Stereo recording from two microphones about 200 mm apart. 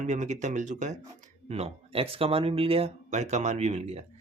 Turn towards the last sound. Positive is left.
turn(degrees=-35)  # may be behind; listen again after turning